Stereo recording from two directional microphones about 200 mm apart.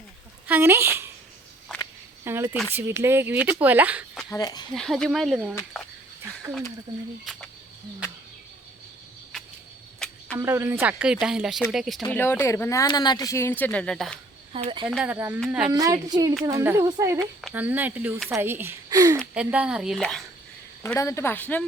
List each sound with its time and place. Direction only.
0.4 s speech: 10° right (ahead or behind)
2.2 s speech: 10° right (ahead or behind)
4.4 s speech: 20° left (ahead or behind)
4.7 s speech: 5° left (ahead or behind)
10.0 s cricket: 5° left (ahead or behind)
10.3 s speech: 15° right (ahead or behind); by 14.2 s 5° left (ahead or behind)
14.5 s a child's voice: 25° right (ahead or behind)
14.8 s speech: 5° right (ahead or behind)
15.7 s a child's voice: 20° right (ahead or behind)
19.3 s speech: 5° right (ahead or behind)
21.0 s speech: 15° left (ahead or behind)